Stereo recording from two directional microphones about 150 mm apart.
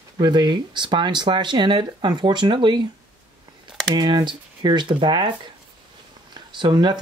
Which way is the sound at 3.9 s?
30° right (ahead or behind).